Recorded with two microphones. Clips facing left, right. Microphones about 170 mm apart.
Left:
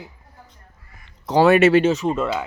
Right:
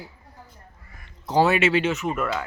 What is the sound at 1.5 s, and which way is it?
Speech, 45° left (ahead or behind).